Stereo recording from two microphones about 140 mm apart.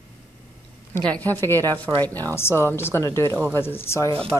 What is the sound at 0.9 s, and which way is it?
A woman's voice, 15° left (ahead or behind).